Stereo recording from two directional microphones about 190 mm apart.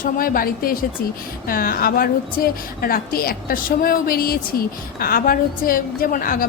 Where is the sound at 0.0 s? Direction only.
50° left (ahead or behind).